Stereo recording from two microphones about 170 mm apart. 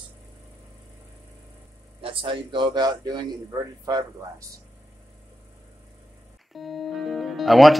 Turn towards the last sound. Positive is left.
turn(degrees=0)  # may be behind; listen again after turning